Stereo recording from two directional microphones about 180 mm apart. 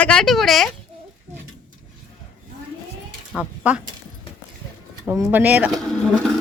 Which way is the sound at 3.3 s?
10° right (ahead or behind).